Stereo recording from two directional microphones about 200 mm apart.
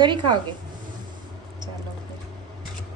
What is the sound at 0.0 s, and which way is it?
Speech, 25° right (ahead or behind).